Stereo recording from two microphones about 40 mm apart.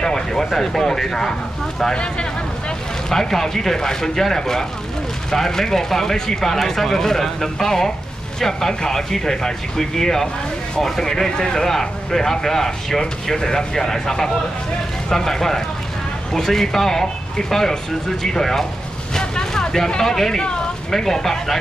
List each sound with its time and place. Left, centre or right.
0.0 s speech: centre
3.1 s speech: centre
19.1 s vehicle: centre
19.9 s speech: centre